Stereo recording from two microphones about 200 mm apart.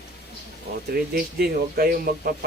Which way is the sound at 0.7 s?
55° right (ahead or behind).